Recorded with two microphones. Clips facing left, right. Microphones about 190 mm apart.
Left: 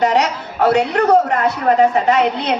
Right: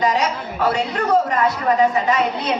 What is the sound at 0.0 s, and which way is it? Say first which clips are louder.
A woman's voice: left 4 dB; 70° left (ahead or behind).